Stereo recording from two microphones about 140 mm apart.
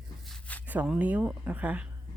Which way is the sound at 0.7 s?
10° right (ahead or behind).